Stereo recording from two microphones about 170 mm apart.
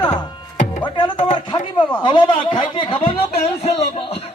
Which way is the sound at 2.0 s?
30° left (ahead or behind).